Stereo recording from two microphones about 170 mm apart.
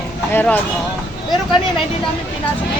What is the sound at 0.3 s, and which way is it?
Speech, 10° left (ahead or behind).